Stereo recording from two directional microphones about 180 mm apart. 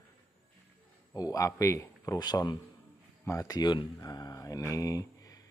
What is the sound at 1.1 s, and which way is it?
Speech, 20° left (ahead or behind).